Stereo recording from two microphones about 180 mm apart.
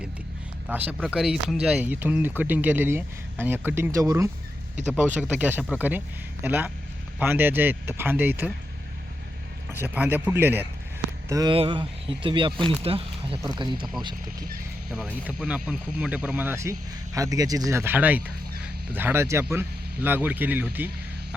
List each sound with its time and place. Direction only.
0.7 s speech: 10° right (ahead or behind)
9.7 s speech: 10° right (ahead or behind)
14.8 s speech: 5° right (ahead or behind)